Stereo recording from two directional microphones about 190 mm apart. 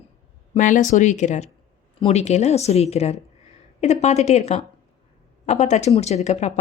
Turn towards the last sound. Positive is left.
turn(degrees=35)  # may be behind; listen again after turning